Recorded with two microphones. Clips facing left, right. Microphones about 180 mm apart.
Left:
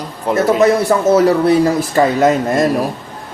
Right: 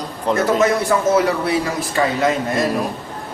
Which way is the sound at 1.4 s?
40° left (ahead or behind).